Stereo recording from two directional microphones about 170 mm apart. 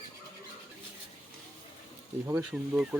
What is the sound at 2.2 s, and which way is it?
Speech, 10° right (ahead or behind).